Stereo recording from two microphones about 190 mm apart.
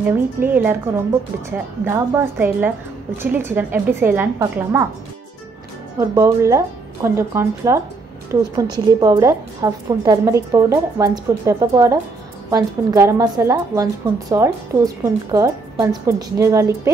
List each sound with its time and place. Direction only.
0.0 s speech: 10° right (ahead or behind)
5.9 s a woman's voice: 15° right (ahead or behind)